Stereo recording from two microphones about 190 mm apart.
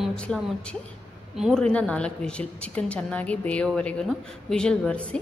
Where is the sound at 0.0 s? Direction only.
5° left (ahead or behind).